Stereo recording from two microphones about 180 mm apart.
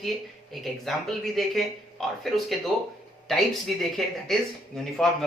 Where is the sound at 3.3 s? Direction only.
Centre (ahead or behind).